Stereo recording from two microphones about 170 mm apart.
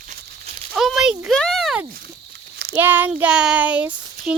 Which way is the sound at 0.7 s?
Centre (ahead or behind).